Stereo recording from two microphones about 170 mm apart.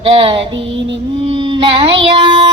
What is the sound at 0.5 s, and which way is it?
Female singing, 90° right.